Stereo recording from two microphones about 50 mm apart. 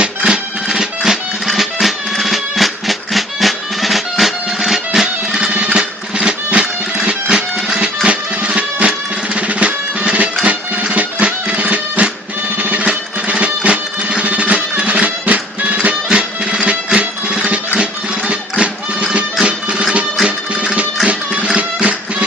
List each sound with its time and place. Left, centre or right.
0.3 s music: centre
20.2 s music: centre